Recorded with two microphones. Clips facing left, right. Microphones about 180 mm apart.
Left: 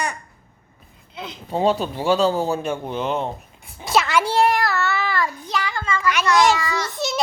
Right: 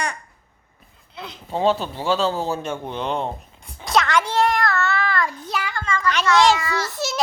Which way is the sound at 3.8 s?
5° left (ahead or behind).